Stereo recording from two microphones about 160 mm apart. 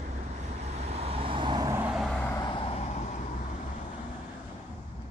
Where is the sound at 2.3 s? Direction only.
30° left (ahead or behind).